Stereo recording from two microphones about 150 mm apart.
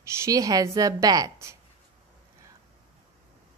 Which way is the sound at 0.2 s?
25° right (ahead or behind).